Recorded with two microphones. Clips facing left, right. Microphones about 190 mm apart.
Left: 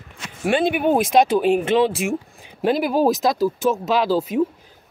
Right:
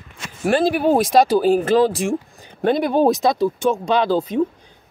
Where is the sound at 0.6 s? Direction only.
35° right (ahead or behind).